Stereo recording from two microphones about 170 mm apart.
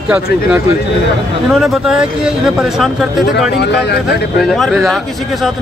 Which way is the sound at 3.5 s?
85° left.